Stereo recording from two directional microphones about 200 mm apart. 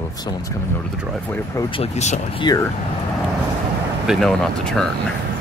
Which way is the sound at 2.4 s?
20° left (ahead or behind).